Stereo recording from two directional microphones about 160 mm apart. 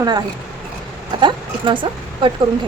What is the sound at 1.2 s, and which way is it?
A woman's voice, 30° right (ahead or behind).